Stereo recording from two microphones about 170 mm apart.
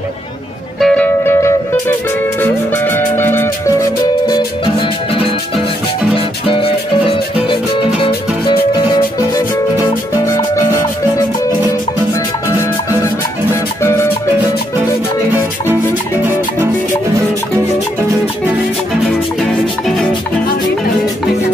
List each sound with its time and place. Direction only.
0.7 s music: 5° left (ahead or behind); by 8.1 s 30° left (ahead or behind)
10.2 s music: 15° left (ahead or behind)
13.8 s music: 15° left (ahead or behind)